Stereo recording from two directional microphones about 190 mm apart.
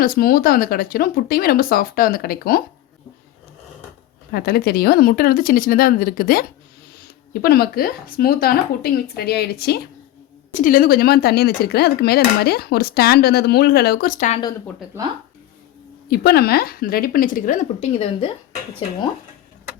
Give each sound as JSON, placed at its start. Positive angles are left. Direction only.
{"t": 0.0, "sound": "speech", "side_deg": 50}
{"t": 4.3, "sound": "speech", "side_deg": 55}
{"t": 7.4, "sound": "speech", "side_deg": 55}
{"t": 10.5, "sound": "speech", "side_deg": 45}
{"t": 16.0, "sound": "speech", "side_deg": 55}